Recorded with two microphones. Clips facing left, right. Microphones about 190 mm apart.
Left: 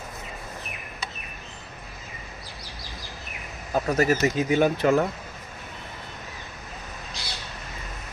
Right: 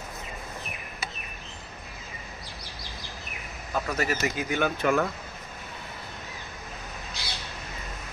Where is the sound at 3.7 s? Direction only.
40° left (ahead or behind).